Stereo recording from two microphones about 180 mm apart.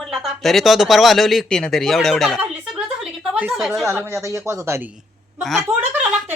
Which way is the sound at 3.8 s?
15° right (ahead or behind).